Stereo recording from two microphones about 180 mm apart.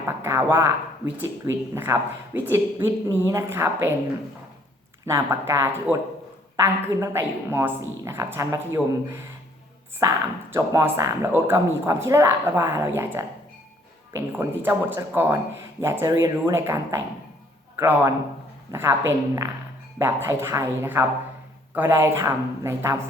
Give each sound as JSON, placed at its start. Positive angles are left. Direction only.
{"t": 0.0, "sound": "speech", "side_deg": -15}
{"t": 5.0, "sound": "speech", "side_deg": -15}
{"t": 10.5, "sound": "speech", "side_deg": -15}
{"t": 14.1, "sound": "speech", "side_deg": -15}